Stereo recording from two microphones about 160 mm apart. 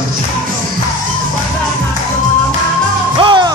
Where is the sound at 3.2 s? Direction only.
30° right (ahead or behind).